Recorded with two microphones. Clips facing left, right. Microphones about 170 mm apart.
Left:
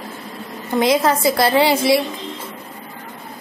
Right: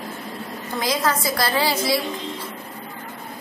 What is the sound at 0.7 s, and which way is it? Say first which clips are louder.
A woman's voice: left 7 dB; 25° left (ahead or behind).